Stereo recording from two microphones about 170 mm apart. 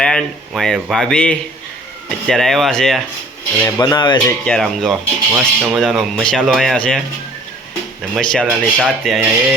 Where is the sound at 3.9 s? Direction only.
25° left (ahead or behind).